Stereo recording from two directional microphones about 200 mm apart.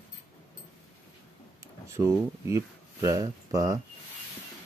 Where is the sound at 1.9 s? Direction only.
15° right (ahead or behind).